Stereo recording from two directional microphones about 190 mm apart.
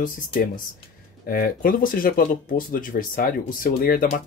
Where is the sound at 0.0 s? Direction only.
45° left (ahead or behind).